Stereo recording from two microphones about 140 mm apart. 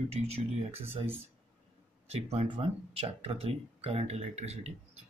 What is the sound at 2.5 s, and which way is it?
Speech, 45° right (ahead or behind).